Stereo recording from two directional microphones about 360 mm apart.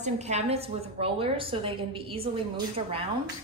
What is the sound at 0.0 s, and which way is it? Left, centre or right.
A woman's voice, centre.